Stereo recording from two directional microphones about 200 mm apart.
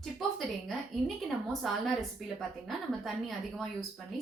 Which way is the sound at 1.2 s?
Centre (ahead or behind).